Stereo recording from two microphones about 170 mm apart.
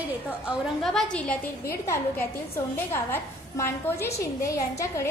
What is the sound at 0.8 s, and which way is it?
Speech, 5° left (ahead or behind).